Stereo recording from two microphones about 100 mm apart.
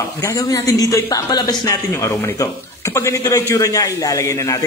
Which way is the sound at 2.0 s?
30° left (ahead or behind).